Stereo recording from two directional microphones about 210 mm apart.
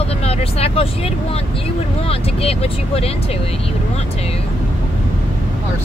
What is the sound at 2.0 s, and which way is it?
Speech, 30° left (ahead or behind).